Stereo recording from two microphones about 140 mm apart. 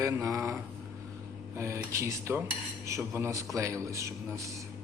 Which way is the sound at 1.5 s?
20° right (ahead or behind).